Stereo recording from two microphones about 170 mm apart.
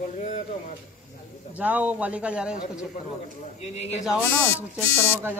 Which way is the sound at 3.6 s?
40° left (ahead or behind).